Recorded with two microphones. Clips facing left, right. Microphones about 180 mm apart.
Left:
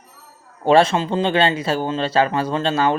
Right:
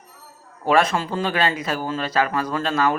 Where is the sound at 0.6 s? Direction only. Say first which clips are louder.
Left 4 dB; 30° left (ahead or behind).